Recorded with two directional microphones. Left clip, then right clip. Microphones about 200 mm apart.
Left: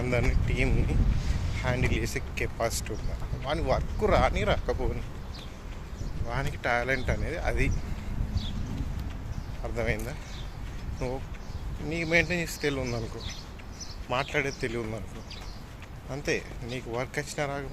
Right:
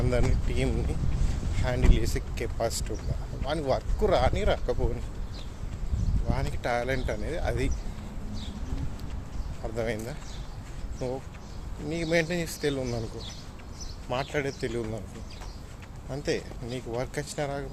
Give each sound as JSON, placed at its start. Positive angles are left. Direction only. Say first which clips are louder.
{"t": 0.0, "sound": "speech", "louder": "even", "side_deg": -15}
{"t": 6.3, "sound": "speech", "louder": "left 1 dB", "side_deg": -10}
{"t": 9.7, "sound": "speech", "louder": "even", "side_deg": -15}
{"t": 11.9, "sound": "speech", "louder": "left 1 dB", "side_deg": -15}
{"t": 14.1, "sound": "speech", "louder": "left 1 dB", "side_deg": -15}
{"t": 16.1, "sound": "speech", "louder": "even", "side_deg": -15}